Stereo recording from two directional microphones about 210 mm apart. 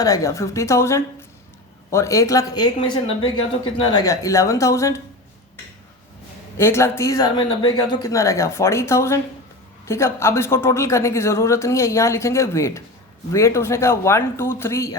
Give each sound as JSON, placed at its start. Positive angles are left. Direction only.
{"t": 0.0, "sound": "speech", "side_deg": 15}
{"t": 6.6, "sound": "speech", "side_deg": 10}